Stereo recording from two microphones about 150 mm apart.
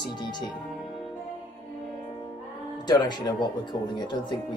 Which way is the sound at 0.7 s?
Centre (ahead or behind).